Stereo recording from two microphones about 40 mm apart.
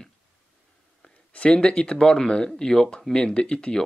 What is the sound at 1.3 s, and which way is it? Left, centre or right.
Speech, left.